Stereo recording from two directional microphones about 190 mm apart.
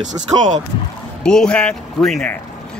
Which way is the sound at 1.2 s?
5° left (ahead or behind).